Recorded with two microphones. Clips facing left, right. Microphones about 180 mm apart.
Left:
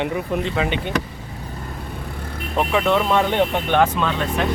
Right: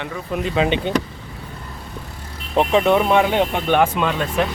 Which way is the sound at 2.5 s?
25° right (ahead or behind).